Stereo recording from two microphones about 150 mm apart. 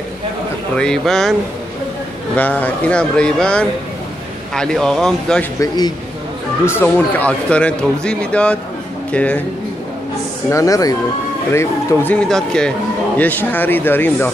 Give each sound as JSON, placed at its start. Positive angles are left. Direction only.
{"t": 0.7, "sound": "speech", "side_deg": 5}
{"t": 2.3, "sound": "speech", "side_deg": 10}
{"t": 5.6, "sound": "speech", "side_deg": 25}
{"t": 6.6, "sound": "speech", "side_deg": 15}
{"t": 10.5, "sound": "speech", "side_deg": 20}